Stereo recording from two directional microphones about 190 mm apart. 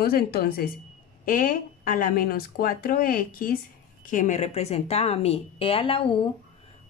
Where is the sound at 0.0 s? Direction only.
55° left (ahead or behind).